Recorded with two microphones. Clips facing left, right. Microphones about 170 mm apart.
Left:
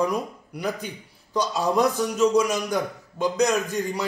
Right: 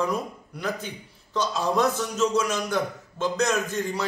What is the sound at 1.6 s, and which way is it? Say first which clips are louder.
A man's voice: left 3 dB; 15° left (ahead or behind).